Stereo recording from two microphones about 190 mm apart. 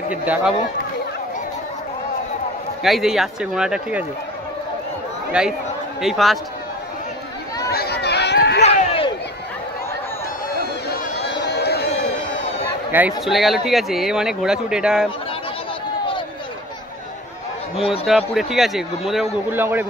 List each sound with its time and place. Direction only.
0.1 s speech: 10° right (ahead or behind)
2.8 s speech: centre (ahead or behind)
5.4 s speech: 5° right (ahead or behind)
7.7 s a sound: 55° left (ahead or behind)
8.6 s a sound: 30° left (ahead or behind)
11.1 s a sound: 60° left (ahead or behind)
13.2 s speech: centre (ahead or behind)
17.7 s speech: 30° left (ahead or behind)
18.0 s speech: centre (ahead or behind)